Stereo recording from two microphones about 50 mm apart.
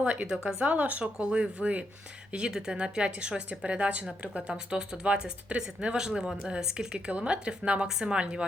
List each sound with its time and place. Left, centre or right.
0.0 s speech: right